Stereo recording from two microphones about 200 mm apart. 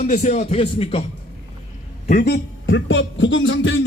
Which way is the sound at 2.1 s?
50° left (ahead or behind).